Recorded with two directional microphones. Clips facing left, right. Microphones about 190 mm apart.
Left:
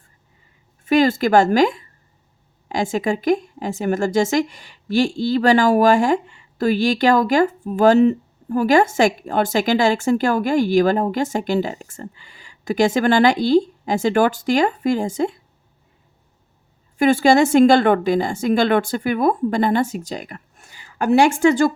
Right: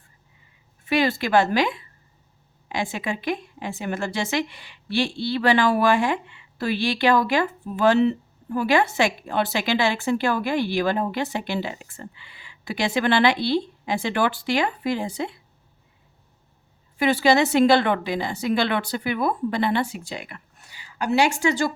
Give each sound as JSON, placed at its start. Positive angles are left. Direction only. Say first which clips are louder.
{"t": 0.9, "sound": "a woman's voice", "louder": "left 6 dB", "side_deg": 45}
{"t": 17.0, "sound": "a woman's voice", "louder": "left 5 dB", "side_deg": 45}